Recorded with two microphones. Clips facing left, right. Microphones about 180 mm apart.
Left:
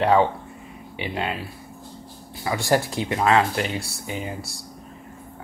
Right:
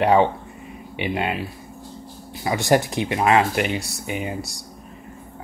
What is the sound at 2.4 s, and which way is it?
Speech, 20° right (ahead or behind).